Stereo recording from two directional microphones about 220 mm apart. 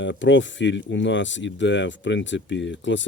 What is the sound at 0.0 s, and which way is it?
Speech, 55° left (ahead or behind).